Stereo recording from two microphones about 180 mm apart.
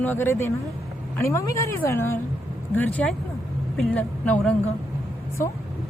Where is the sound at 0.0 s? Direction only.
10° left (ahead or behind).